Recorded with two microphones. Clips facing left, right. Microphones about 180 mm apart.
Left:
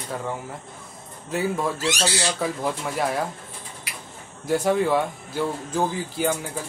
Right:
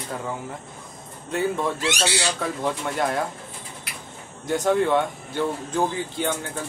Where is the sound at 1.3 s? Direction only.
5° left (ahead or behind).